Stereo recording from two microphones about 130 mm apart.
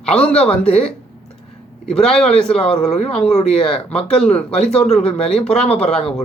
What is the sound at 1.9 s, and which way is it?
Speech, 5° left (ahead or behind).